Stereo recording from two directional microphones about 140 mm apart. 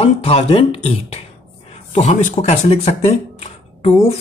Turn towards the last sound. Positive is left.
turn(degrees=45)  # may be behind; listen again after turning